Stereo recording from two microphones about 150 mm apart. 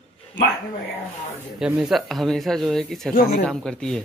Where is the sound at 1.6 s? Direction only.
5° right (ahead or behind).